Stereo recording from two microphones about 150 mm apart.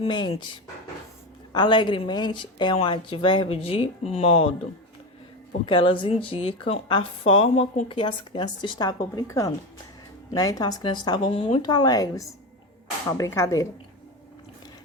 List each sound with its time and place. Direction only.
0.0 s a woman's voice: 30° left (ahead or behind)
5.6 s a woman's voice: 35° left (ahead or behind)